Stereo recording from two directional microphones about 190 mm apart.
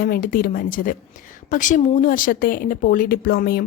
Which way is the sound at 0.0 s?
50° left (ahead or behind).